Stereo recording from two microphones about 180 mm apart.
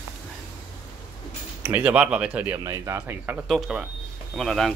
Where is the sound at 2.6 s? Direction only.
20° right (ahead or behind).